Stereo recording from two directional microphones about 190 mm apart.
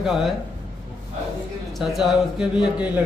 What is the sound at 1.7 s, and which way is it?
A man's voice, centre (ahead or behind).